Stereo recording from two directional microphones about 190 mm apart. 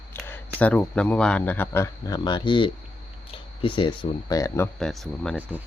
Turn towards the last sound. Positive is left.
turn(degrees=-10)  # may be behind; listen again after turning